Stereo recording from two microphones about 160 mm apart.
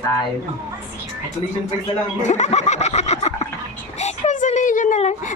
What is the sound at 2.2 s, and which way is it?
Snicker, 45° left (ahead or behind).